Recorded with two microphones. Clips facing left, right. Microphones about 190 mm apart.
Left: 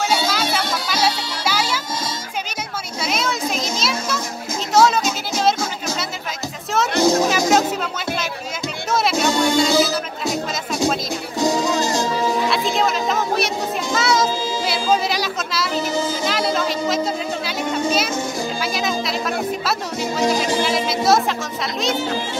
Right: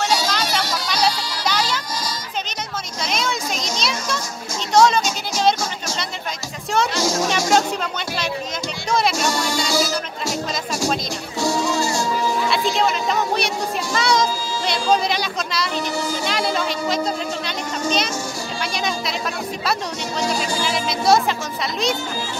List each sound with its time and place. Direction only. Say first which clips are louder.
0.1 s music: left 1 dB; 5° left (ahead or behind)
3.1 s a sound: left 2 dB; 5° left (ahead or behind)
4.7 s music: even; 5° left (ahead or behind)
6.9 s music: left 6 dB; 60° left (ahead or behind)
7.2 s music: left 2 dB; 5° left (ahead or behind)
8.9 s music: left 2 dB; centre (ahead or behind)
11.3 s music: left 2 dB; 20° left (ahead or behind)
12.4 s music: even; centre (ahead or behind)
13.9 s a sound: left 1 dB; 5° left (ahead or behind)
16.1 s music: left 1 dB; centre (ahead or behind)